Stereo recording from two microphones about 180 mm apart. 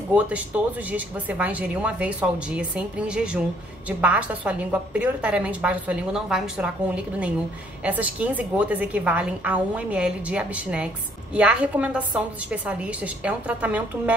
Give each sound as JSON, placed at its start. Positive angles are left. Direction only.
{"t": 0.5, "sound": "a woman's voice", "side_deg": -10}
{"t": 7.8, "sound": "a woman's voice", "side_deg": -10}